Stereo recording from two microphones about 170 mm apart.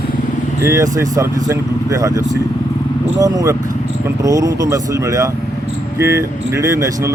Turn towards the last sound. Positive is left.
turn(degrees=-20)  # may be behind; listen again after turning